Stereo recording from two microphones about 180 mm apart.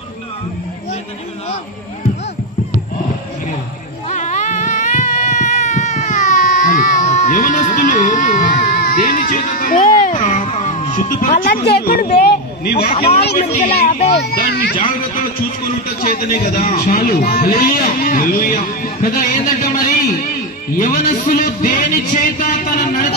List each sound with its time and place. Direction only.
4.1 s baby cry: 45° left (ahead or behind)
9.8 s music: 45° left (ahead or behind)
11.1 s speech: 45° left (ahead or behind); by 12.7 s 65° left (ahead or behind)
12.7 s a man's voice: 45° left (ahead or behind)
14.1 s speech: 60° left (ahead or behind)
16.0 s a man's voice: 55° left (ahead or behind)
17.3 s a man's voice: 55° left (ahead or behind)
20.7 s a man's voice: 45° left (ahead or behind)